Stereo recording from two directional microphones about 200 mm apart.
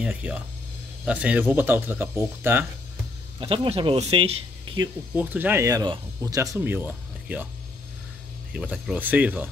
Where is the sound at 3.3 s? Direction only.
30° right (ahead or behind).